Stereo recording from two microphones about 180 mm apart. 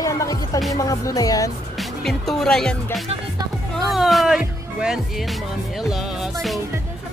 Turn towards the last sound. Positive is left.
turn(degrees=0)  # may be behind; listen again after turning